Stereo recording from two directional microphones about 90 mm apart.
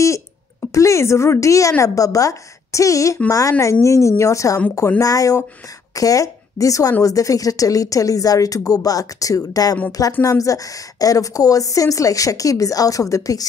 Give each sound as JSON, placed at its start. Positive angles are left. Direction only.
{"t": 0.7, "sound": "a woman's voice", "side_deg": 35}